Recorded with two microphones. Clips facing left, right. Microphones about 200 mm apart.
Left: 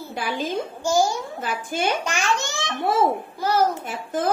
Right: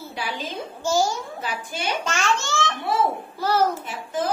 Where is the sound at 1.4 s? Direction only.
50° left (ahead or behind).